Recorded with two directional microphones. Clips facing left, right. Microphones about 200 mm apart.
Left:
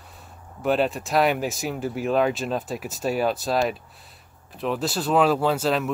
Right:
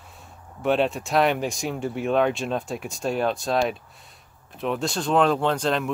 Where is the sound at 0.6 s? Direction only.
Centre (ahead or behind).